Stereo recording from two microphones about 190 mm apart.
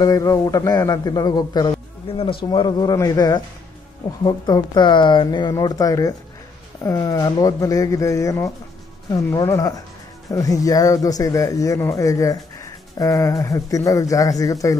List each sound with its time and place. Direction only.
0.0 s a man's voice: 20° left (ahead or behind)